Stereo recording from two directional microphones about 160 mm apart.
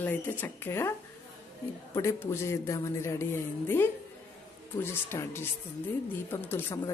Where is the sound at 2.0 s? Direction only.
15° left (ahead or behind).